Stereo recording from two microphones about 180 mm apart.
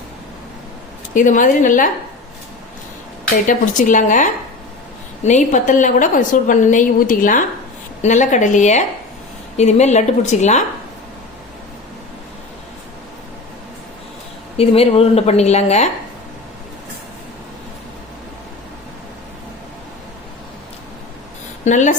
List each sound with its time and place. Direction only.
1.1 s a woman's voice: 45° left (ahead or behind)
3.4 s a woman's voice: 45° left (ahead or behind)
14.5 s a woman's voice: 35° left (ahead or behind)
21.6 s a woman's voice: 40° left (ahead or behind)